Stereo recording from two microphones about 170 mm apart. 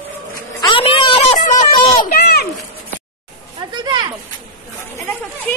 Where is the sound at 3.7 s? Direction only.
25° right (ahead or behind).